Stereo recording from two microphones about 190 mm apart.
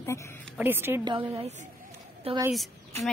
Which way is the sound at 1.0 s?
25° right (ahead or behind).